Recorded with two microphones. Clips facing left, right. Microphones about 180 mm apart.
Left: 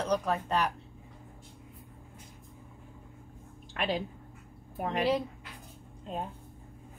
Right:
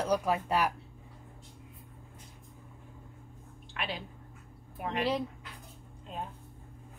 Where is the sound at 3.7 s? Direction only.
45° left (ahead or behind).